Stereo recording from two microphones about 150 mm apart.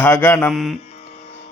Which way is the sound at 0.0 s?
15° left (ahead or behind).